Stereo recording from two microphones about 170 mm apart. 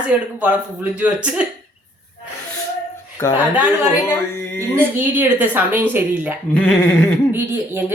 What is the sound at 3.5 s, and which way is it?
Speech, 10° right (ahead or behind).